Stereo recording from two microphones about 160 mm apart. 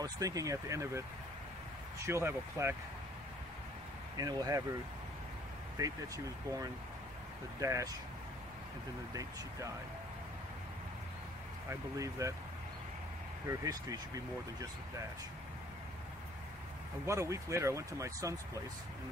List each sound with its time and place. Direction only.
0.0 s speech: 20° right (ahead or behind)
2.0 s speech: 15° right (ahead or behind)
4.2 s speech: 20° right (ahead or behind)
5.8 s speech: 20° right (ahead or behind)
9.1 s speech: 20° right (ahead or behind)
11.7 s speech: 20° right (ahead or behind)
13.5 s speech: 20° right (ahead or behind)
17.0 s speech: 20° right (ahead or behind)